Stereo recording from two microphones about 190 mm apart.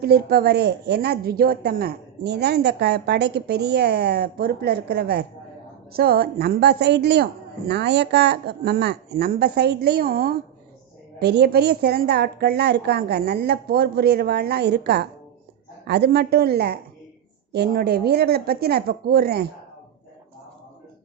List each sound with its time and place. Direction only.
0.0 s a woman's voice: 55° right (ahead or behind)